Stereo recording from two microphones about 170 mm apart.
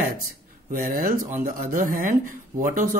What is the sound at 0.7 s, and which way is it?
Speech, 55° right (ahead or behind).